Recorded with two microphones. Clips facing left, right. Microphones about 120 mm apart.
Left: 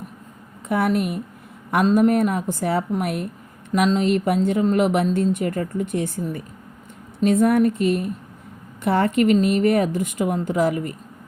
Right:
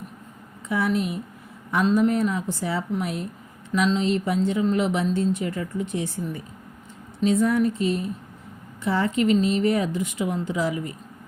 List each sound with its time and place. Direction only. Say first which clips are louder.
0.7 s a woman's voice: left 3 dB; 55° left (ahead or behind)
3.7 s a woman's voice: left 3 dB; 45° left (ahead or behind)